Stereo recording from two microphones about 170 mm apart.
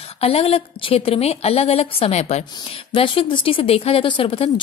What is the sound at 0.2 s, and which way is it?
Speech, 35° left (ahead or behind).